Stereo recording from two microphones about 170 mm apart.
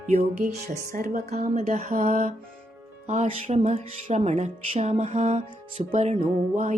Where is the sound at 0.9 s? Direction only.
50° right (ahead or behind).